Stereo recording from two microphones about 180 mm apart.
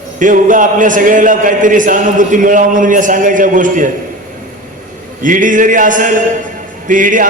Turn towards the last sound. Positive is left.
turn(degrees=-45)  # may be behind; listen again after turning